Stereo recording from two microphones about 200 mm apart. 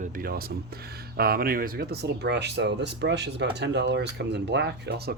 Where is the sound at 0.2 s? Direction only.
50° right (ahead or behind).